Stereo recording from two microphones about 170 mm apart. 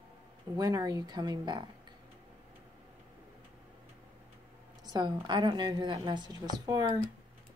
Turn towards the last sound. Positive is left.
turn(degrees=-20)  # may be behind; listen again after turning